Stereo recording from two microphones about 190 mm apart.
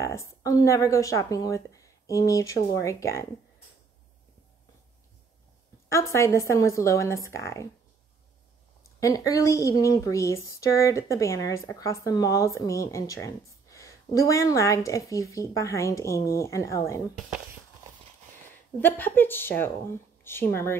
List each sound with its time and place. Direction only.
0.0 s speech: 15° left (ahead or behind)
5.9 s speech: 15° left (ahead or behind)
9.0 s speech: 15° left (ahead or behind)
18.8 s speech: 10° left (ahead or behind)